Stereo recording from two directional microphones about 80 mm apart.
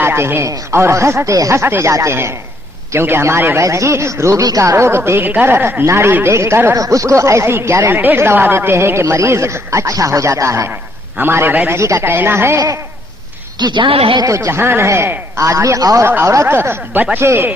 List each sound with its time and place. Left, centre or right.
0.0 s speech: right
4.4 s speech: right
11.2 s speech: right
11.7 s speech: right
12.5 s speech: right
13.6 s a woman's voice: right
14.3 s speech: right